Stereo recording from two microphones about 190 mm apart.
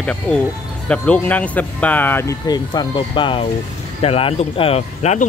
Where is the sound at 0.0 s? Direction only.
5° left (ahead or behind).